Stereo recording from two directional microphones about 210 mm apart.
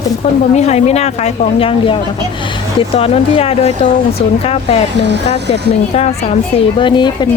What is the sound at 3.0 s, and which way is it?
Speech, 30° left (ahead or behind).